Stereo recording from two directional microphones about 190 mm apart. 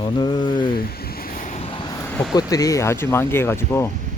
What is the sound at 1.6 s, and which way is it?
Vehicle, 25° left (ahead or behind).